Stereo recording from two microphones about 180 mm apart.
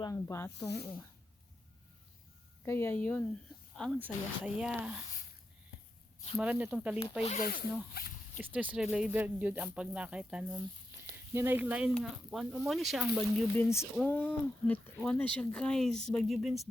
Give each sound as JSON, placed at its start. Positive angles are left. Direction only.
{"t": 0.0, "sound": "speech", "side_deg": 15}
{"t": 2.6, "sound": "speech", "side_deg": 10}
{"t": 3.9, "sound": "speech", "side_deg": -10}
{"t": 6.3, "sound": "speech", "side_deg": -5}
{"t": 7.2, "sound": "speech", "side_deg": 35}
{"t": 7.4, "sound": "speech", "side_deg": 55}
{"t": 8.5, "sound": "speech", "side_deg": -5}
{"t": 13.6, "sound": "speech", "side_deg": 15}